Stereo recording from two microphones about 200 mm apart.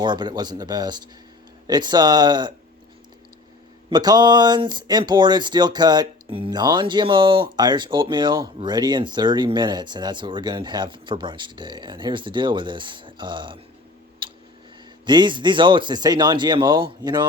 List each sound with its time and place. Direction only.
0.0 s speech: 20° right (ahead or behind)
3.8 s speech: 20° right (ahead or behind)
14.2 s tick: 25° right (ahead or behind)
15.0 s speech: 20° right (ahead or behind)